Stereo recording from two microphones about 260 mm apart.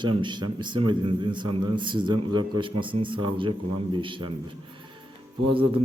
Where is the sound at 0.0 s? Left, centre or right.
Centre.